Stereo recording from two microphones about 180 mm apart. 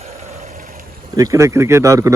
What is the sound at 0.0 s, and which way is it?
Vehicle, 40° right (ahead or behind).